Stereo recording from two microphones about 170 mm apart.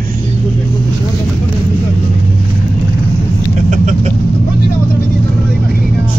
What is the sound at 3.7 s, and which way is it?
Vehicle, 45° right (ahead or behind).